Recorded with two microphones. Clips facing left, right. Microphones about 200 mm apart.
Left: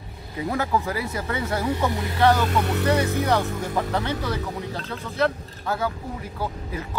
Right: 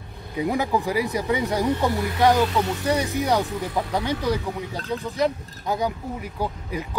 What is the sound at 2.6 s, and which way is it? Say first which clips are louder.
Speech: left 2 dB; 60° left (ahead or behind).